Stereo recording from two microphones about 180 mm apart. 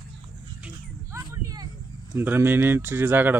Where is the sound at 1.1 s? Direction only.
20° right (ahead or behind).